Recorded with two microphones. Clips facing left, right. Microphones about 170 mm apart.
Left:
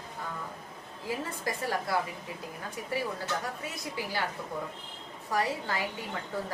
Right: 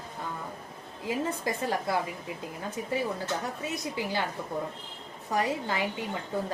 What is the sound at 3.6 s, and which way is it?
Speech, 20° right (ahead or behind).